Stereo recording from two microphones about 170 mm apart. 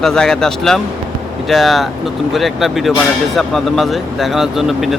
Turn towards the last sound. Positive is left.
turn(degrees=0)  # may be behind; listen again after turning